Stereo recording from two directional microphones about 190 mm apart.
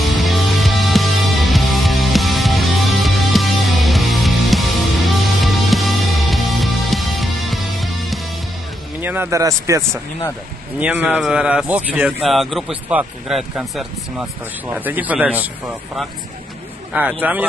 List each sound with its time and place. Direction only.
0.0 s music: centre (ahead or behind)
9.0 s a man's voice: 10° right (ahead or behind)
16.9 s speech: 10° right (ahead or behind)